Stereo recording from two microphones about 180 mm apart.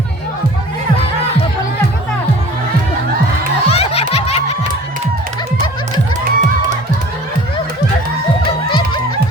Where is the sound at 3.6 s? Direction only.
35° left (ahead or behind).